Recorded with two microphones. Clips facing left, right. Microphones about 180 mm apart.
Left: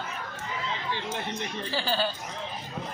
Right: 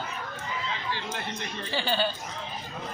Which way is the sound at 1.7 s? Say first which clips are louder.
Right 1 dB; centre (ahead or behind).